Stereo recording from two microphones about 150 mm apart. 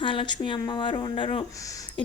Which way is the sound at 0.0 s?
35° left (ahead or behind).